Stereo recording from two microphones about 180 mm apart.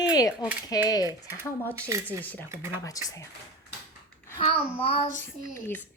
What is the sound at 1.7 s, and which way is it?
Speech, 15° right (ahead or behind).